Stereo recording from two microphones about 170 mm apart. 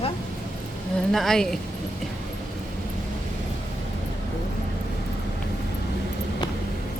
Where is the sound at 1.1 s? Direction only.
Centre (ahead or behind).